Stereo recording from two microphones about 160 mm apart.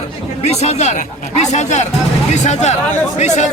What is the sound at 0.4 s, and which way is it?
Speech, 40° left (ahead or behind).